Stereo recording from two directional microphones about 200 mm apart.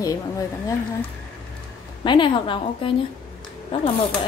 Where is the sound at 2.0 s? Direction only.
25° left (ahead or behind).